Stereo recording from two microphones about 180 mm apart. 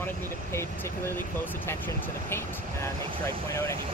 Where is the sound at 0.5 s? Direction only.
10° left (ahead or behind).